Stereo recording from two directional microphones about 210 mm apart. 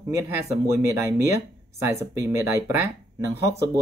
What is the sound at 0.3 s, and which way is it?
Speech, 15° right (ahead or behind).